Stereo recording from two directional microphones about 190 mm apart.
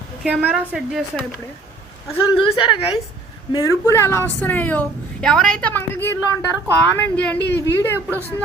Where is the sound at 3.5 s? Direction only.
15° left (ahead or behind).